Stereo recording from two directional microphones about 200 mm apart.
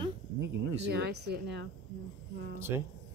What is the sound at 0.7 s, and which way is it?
Speech, 55° right (ahead or behind).